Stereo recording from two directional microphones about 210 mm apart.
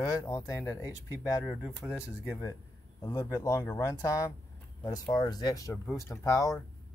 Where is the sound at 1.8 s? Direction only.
5° right (ahead or behind).